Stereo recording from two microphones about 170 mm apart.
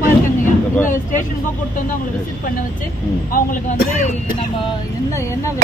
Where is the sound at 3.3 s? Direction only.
50° left (ahead or behind).